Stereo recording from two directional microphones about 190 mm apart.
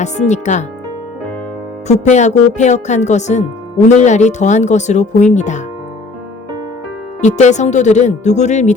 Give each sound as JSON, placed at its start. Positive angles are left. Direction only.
{"t": 0.0, "sound": "speech", "side_deg": 40}
{"t": 1.9, "sound": "speech", "side_deg": 40}
{"t": 7.2, "sound": "speech", "side_deg": 40}